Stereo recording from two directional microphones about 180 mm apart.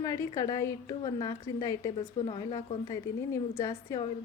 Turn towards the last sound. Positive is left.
turn(degrees=15)  # may be behind; listen again after turning